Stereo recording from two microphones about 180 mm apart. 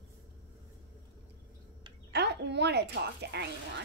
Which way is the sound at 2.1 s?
70° right (ahead or behind).